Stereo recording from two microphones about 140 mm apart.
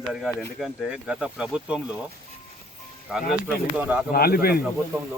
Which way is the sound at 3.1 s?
5° right (ahead or behind).